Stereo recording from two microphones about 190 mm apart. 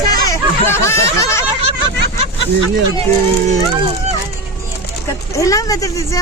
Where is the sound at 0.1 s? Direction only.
15° left (ahead or behind).